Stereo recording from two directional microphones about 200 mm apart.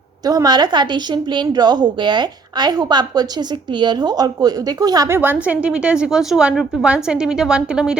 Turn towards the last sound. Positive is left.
turn(degrees=-5)  # may be behind; listen again after turning